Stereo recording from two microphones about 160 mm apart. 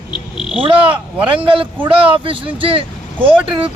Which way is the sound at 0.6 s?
35° right (ahead or behind).